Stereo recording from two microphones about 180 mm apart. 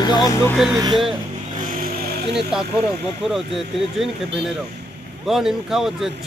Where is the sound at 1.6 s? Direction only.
50° right (ahead or behind).